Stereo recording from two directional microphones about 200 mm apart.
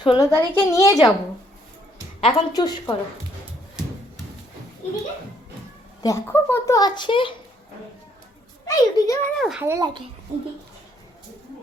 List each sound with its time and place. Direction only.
0.0 s a woman's voice: 20° left (ahead or behind)
2.2 s a child's voice: 20° left (ahead or behind)
6.0 s a child's voice: 15° left (ahead or behind)
8.6 s a woman's voice: 15° left (ahead or behind)
9.4 s speech: centre (ahead or behind)
9.6 s speech: 20° right (ahead or behind)